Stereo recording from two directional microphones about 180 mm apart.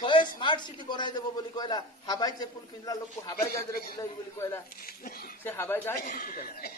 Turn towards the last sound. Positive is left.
turn(degrees=55)  # may be behind; listen again after turning